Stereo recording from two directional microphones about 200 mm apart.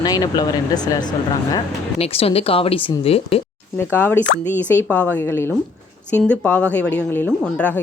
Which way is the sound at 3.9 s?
10° left (ahead or behind).